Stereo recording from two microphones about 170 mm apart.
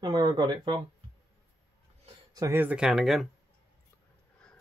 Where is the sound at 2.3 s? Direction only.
15° right (ahead or behind).